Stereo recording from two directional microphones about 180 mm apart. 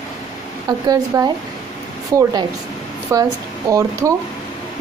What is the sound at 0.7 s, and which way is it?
A woman's voice, 20° right (ahead or behind).